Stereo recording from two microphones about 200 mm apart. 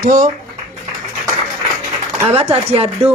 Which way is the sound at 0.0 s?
45° right (ahead or behind).